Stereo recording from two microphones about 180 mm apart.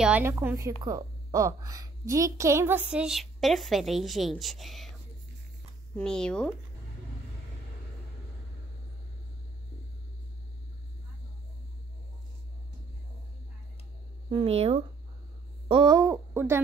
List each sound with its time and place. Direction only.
0.0 s a woman's voice: 10° right (ahead or behind)
5.9 s speech: 5° left (ahead or behind)
14.3 s a woman's voice: 30° right (ahead or behind); by 16.6 s 15° right (ahead or behind)